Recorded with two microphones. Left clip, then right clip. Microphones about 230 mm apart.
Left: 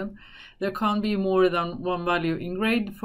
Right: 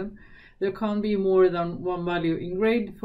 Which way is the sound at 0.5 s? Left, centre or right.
Centre.